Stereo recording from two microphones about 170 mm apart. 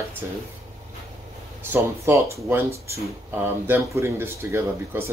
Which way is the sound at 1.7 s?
15° right (ahead or behind).